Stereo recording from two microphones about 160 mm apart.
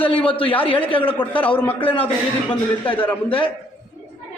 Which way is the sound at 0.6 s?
35° left (ahead or behind).